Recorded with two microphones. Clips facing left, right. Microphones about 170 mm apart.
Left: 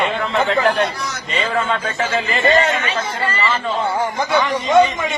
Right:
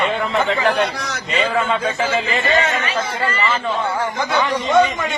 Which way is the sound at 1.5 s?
Centre (ahead or behind).